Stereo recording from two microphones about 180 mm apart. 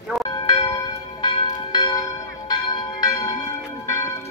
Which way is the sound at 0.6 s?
20° left (ahead or behind).